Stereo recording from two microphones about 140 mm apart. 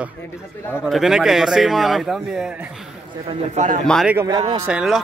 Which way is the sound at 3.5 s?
65° right (ahead or behind).